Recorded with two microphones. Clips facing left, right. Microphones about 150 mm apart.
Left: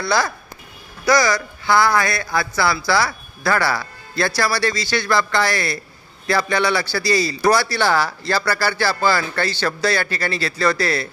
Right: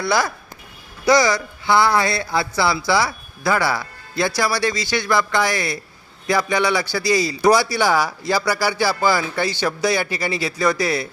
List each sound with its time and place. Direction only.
0.0 s a man's voice: 15° right (ahead or behind)